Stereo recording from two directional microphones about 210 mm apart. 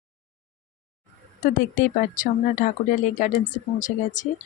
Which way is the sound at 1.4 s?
40° left (ahead or behind).